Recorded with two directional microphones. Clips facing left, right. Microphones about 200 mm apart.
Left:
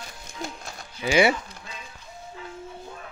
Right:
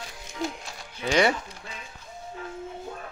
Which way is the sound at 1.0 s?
5° left (ahead or behind).